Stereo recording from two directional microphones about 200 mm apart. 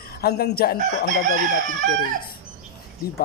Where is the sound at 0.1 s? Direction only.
50° left (ahead or behind).